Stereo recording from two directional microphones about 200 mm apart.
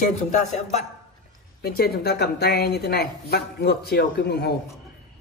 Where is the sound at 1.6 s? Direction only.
50° left (ahead or behind).